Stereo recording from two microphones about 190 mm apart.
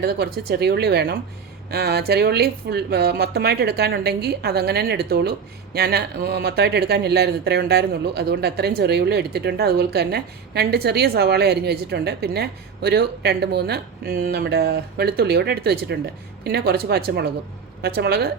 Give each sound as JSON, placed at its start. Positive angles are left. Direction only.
{"t": 0.0, "sound": "speech", "side_deg": -55}